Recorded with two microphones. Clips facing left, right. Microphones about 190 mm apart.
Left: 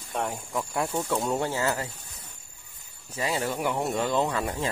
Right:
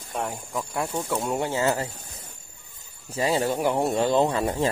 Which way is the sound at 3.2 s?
30° right (ahead or behind).